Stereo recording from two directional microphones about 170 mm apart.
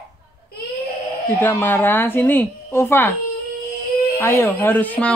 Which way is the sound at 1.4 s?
10° left (ahead or behind).